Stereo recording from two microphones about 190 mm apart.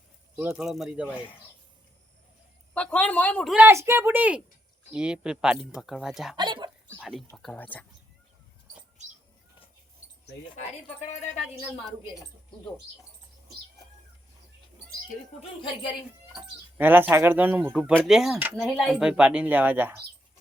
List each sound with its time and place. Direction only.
0.3 s speech: 5° right (ahead or behind)
2.7 s a woman's voice: 5° left (ahead or behind)
3.7 s speech: 15° right (ahead or behind)
6.3 s a sound: 25° right (ahead or behind)
7.0 s a woman's voice: centre (ahead or behind)
15.4 s a woman's voice: 25° left (ahead or behind)
16.3 s speech: 10° right (ahead or behind)